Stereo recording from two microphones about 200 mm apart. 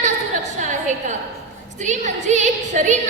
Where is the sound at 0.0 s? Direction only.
35° right (ahead or behind).